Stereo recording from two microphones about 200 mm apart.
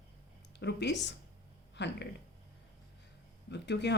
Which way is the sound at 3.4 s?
60° left (ahead or behind).